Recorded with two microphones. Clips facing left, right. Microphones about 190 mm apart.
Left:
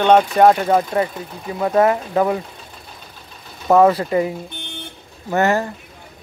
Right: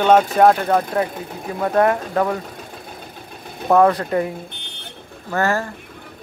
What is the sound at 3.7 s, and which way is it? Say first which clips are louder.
Speech: left 2 dB; 5° left (ahead or behind).